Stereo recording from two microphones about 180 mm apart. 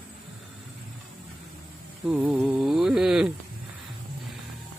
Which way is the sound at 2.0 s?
5° right (ahead or behind).